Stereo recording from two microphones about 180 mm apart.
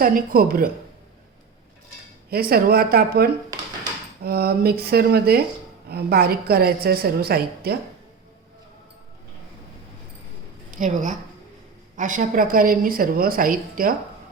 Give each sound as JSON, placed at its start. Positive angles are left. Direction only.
{"t": 0.0, "sound": "a woman's voice", "side_deg": -55}
{"t": 2.3, "sound": "a woman's voice", "side_deg": -55}
{"t": 10.8, "sound": "a woman's voice", "side_deg": -45}